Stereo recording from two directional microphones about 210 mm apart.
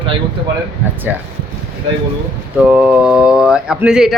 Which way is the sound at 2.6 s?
5° right (ahead or behind).